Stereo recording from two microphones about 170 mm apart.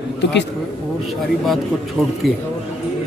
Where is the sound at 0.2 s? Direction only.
90° left.